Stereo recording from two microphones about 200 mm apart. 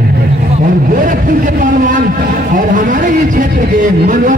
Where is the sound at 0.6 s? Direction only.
45° right (ahead or behind).